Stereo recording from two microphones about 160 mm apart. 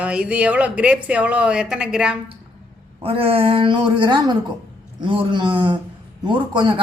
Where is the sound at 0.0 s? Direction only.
5° right (ahead or behind).